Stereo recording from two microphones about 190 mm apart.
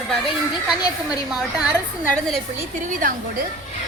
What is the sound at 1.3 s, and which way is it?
A woman's voice, 5° right (ahead or behind).